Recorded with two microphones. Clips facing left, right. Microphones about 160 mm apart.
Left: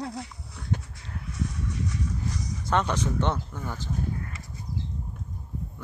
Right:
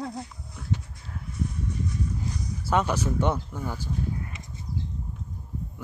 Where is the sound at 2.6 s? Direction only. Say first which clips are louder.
Right 1 dB; 10° right (ahead or behind).